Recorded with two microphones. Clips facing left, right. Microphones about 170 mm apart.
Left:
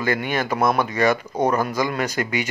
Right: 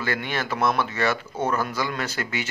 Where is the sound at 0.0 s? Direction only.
15° left (ahead or behind).